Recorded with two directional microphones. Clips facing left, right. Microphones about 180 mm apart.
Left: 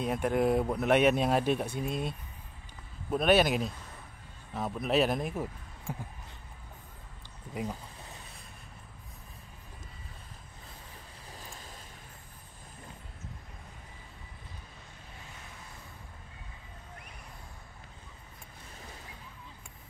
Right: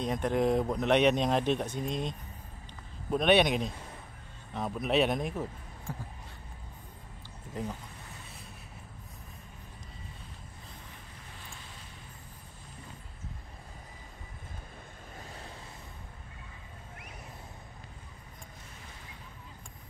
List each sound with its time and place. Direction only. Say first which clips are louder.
0.0 s speech: even; 5° left (ahead or behind)
11.3 s boat: left 3 dB; 40° left (ahead or behind)